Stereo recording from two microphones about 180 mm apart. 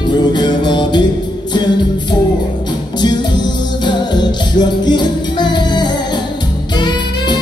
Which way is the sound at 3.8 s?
25° left (ahead or behind).